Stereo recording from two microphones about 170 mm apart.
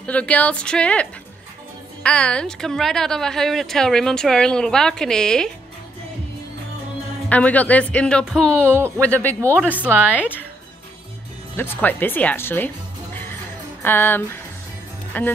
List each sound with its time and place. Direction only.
0.0 s speech: 5° left (ahead or behind)
2.0 s speech: 5° left (ahead or behind)
7.2 s speech: 10° left (ahead or behind)
8.7 s speech: 15° right (ahead or behind)
9.0 s speech: 10° left (ahead or behind)
9.4 s speech: 15° right (ahead or behind)
11.5 s speech: 15° left (ahead or behind)